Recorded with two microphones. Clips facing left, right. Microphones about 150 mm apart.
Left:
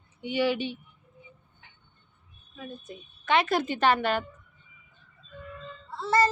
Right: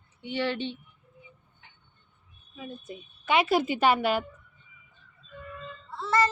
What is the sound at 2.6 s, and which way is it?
Speech, 5° right (ahead or behind).